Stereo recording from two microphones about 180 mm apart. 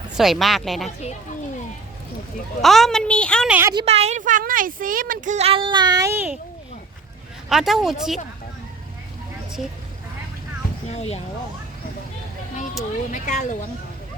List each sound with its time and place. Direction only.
0.2 s a woman's voice: centre (ahead or behind)
2.6 s a woman's voice: centre (ahead or behind)
3.5 s a woman's voice: 15° right (ahead or behind)
3.8 s speech: 35° right (ahead or behind); by 6.4 s 10° right (ahead or behind)
7.5 s a woman's voice: centre (ahead or behind)
10.9 s speech: 35° left (ahead or behind)
13.1 s speech: 45° left (ahead or behind)